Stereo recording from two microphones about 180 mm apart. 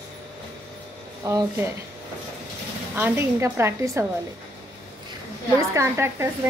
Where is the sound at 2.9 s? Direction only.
10° right (ahead or behind).